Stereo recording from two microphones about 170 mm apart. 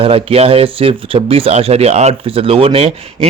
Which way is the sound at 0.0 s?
35° right (ahead or behind).